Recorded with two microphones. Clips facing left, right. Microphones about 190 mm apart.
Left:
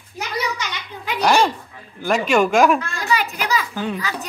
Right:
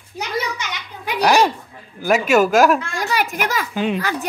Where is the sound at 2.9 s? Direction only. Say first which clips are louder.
Right 1 dB; 50° right (ahead or behind).